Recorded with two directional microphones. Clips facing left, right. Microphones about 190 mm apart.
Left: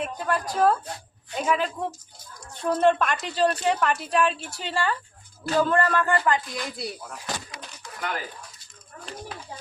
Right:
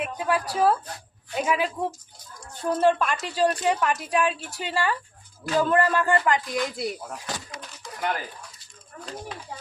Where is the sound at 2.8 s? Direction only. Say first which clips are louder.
Even; 5° right (ahead or behind).